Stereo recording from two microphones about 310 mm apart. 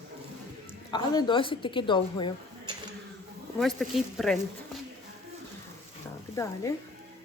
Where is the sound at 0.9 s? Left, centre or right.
Centre.